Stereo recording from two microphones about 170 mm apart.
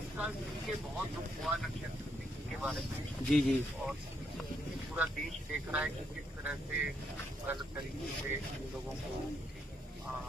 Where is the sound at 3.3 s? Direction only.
Centre (ahead or behind).